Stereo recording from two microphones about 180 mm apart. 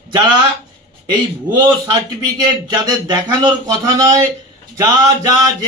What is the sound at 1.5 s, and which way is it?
A man's voice, 25° right (ahead or behind).